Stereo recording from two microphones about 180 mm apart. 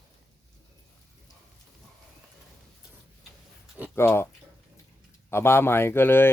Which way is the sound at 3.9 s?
15° left (ahead or behind).